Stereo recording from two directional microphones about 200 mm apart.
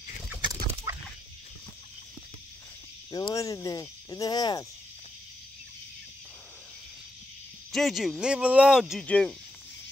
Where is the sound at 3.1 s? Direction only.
20° left (ahead or behind).